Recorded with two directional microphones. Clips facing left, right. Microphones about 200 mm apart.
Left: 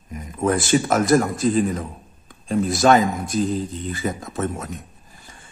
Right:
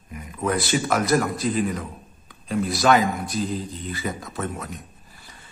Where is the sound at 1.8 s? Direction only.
45° left (ahead or behind).